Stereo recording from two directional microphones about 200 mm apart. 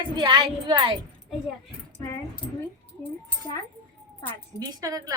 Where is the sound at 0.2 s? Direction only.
20° right (ahead or behind).